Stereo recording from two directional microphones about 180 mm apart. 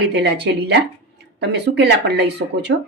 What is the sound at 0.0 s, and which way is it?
Speech, 70° right (ahead or behind).